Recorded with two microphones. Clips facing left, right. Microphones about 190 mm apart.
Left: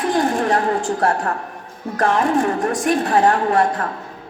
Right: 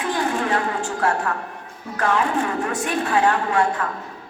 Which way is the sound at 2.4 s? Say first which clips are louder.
Left 5 dB; 50° left (ahead or behind).